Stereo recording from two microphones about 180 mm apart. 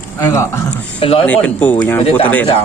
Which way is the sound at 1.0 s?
30° left (ahead or behind).